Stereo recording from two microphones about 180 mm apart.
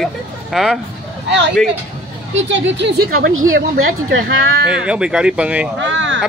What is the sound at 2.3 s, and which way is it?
Speech, 85° right.